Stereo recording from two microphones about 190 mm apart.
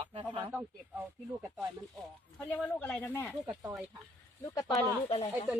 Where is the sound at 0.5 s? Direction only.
5° right (ahead or behind).